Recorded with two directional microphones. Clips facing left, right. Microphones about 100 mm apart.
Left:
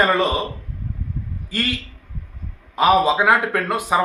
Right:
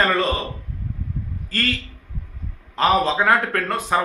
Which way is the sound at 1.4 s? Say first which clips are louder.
Even; 15° left (ahead or behind).